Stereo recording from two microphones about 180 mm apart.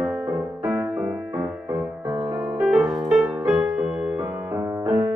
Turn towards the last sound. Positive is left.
turn(degrees=-20)  # may be behind; listen again after turning